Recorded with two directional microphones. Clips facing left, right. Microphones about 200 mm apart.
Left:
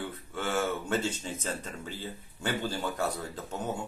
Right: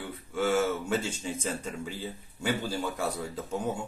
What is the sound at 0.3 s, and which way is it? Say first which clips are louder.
Speech: right 5 dB; 10° right (ahead or behind).